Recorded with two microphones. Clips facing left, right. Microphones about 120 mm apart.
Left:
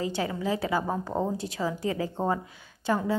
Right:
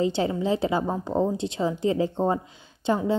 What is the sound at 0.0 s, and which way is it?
A woman's voice, 25° right (ahead or behind).